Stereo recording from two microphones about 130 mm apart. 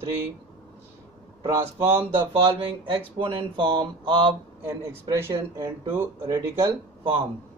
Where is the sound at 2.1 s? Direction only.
40° right (ahead or behind).